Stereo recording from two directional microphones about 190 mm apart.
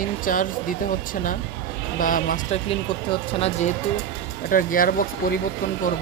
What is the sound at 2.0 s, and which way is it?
Speech, 45° left (ahead or behind).